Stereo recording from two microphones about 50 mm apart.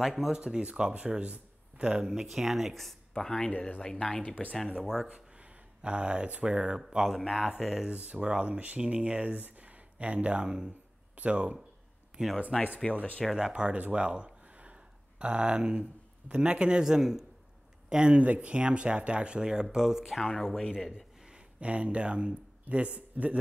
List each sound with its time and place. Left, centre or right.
0.0 s speech: centre
0.4 s speech: right; by 3.5 s centre
3.5 s speech: left
3.8 s speech: centre
5.8 s speech: right
6.4 s speech: centre
7.8 s speech: right
12.1 s a sound: centre
12.5 s speech: centre
13.4 s speech: centre
13.9 s a sound: right
16.3 s speech: right
20.2 s speech: centre
20.9 s speech: right